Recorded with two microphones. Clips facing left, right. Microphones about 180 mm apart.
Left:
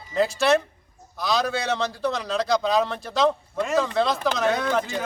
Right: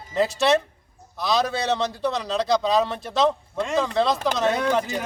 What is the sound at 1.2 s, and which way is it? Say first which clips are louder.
A man's voice: right 1 dB; centre (ahead or behind).